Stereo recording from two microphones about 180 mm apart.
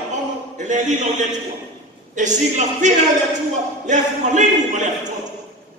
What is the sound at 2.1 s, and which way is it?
A man's voice, 40° right (ahead or behind).